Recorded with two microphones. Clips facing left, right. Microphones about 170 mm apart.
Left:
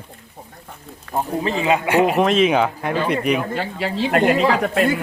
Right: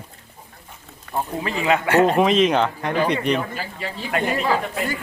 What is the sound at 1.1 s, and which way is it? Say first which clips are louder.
Speech: left 4 dB; 20° left (ahead or behind).